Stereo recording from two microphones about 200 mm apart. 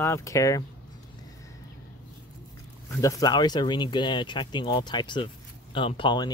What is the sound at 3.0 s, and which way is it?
Speech, 15° left (ahead or behind).